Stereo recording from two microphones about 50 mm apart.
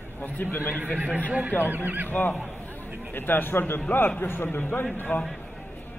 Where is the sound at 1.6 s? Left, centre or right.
Right.